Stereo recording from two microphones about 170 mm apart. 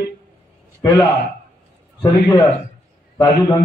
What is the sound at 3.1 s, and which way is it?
Speech, 20° left (ahead or behind).